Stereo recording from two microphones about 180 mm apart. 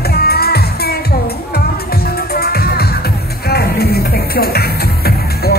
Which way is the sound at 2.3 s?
60° left (ahead or behind).